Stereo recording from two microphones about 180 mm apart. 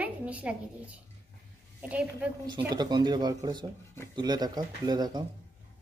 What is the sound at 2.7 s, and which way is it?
Speech, 25° right (ahead or behind).